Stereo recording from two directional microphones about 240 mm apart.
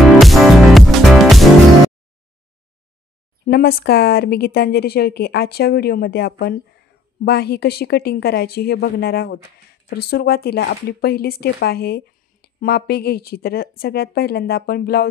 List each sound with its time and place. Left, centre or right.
0.2 s music: centre
3.4 s speech: left